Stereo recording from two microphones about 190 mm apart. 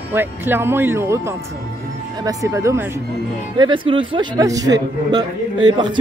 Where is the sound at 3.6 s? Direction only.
25° right (ahead or behind).